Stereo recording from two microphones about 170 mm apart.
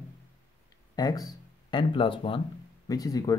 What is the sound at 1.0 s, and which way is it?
Speech, 20° left (ahead or behind).